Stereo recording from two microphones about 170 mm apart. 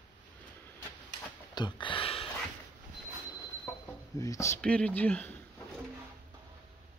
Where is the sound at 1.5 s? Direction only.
25° left (ahead or behind).